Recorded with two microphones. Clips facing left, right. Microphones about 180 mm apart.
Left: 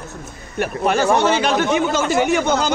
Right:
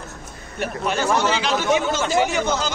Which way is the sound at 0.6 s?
60° left (ahead or behind).